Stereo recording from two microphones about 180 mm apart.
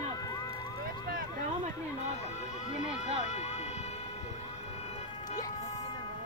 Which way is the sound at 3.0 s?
40° left (ahead or behind).